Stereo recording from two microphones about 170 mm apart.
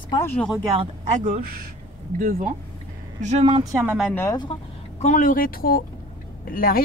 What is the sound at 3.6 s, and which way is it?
Speech, 20° right (ahead or behind).